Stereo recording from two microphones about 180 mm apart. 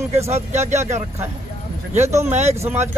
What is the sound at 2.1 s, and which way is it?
Speech, 15° right (ahead or behind).